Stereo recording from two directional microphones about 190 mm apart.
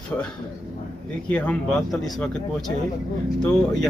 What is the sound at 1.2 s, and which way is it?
Speech, 5° left (ahead or behind).